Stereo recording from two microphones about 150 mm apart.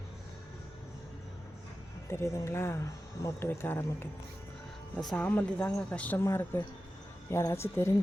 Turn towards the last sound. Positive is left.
turn(degrees=20)  # may be behind; listen again after turning